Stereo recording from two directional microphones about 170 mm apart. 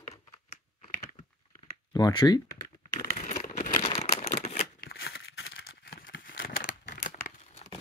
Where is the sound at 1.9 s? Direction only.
25° left (ahead or behind).